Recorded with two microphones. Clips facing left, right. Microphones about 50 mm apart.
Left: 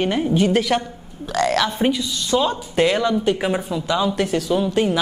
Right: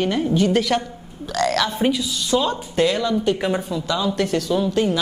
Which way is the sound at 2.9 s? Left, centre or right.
Left.